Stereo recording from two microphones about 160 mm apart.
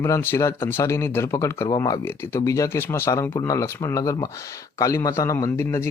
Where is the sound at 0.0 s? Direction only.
15° left (ahead or behind).